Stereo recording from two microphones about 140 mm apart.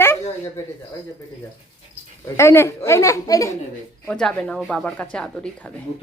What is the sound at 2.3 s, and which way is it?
A woman's voice, 20° left (ahead or behind).